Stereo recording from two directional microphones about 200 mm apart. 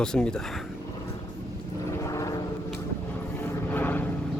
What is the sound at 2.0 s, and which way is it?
Vehicle, 15° left (ahead or behind).